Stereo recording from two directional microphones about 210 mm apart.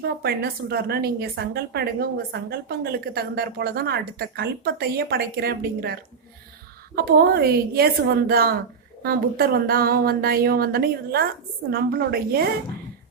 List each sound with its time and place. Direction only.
0.2 s a woman's voice: 50° right (ahead or behind)